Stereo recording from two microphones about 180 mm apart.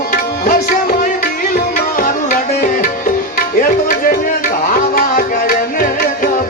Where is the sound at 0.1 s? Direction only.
45° left (ahead or behind).